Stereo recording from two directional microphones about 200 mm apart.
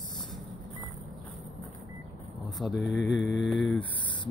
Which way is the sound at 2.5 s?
Centre (ahead or behind).